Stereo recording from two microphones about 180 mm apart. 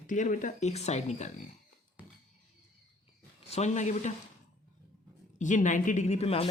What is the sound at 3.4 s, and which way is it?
Speech, 40° left (ahead or behind).